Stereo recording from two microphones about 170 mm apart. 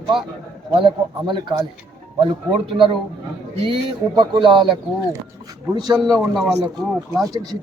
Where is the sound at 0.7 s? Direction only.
30° right (ahead or behind).